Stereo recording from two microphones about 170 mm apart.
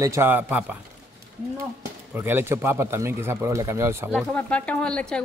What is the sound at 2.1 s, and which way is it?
Speech, 10° right (ahead or behind).